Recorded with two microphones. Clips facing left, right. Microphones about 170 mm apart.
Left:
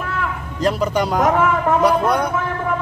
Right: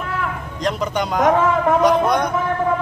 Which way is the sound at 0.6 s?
5° left (ahead or behind).